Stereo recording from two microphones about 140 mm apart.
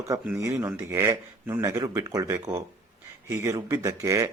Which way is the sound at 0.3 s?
20° right (ahead or behind).